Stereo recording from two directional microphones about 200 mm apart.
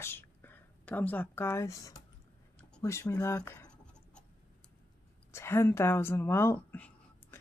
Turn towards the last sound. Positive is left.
turn(degrees=10)  # may be behind; listen again after turning